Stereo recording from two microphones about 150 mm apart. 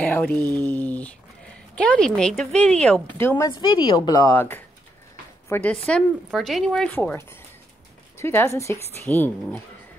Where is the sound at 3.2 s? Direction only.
20° left (ahead or behind).